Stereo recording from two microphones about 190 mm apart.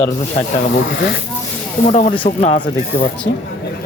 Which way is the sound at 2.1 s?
30° left (ahead or behind).